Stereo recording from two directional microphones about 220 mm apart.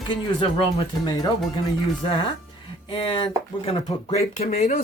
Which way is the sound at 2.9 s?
25° left (ahead or behind).